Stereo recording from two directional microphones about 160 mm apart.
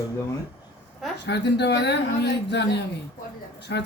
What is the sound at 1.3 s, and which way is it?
Speech, 90° left.